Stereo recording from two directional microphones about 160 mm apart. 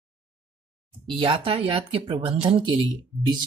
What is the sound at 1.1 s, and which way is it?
Speech, 35° right (ahead or behind).